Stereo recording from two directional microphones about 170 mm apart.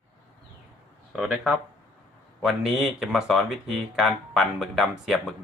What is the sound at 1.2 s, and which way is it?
Speech, centre (ahead or behind).